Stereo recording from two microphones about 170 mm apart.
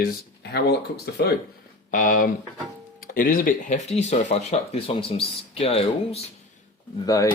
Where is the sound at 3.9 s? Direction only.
40° left (ahead or behind).